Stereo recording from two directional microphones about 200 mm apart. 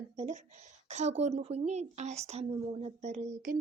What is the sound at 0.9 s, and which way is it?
A woman's voice, 35° right (ahead or behind).